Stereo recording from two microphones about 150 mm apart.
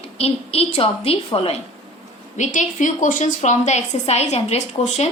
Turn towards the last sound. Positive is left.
turn(degrees=50)  # may be behind; listen again after turning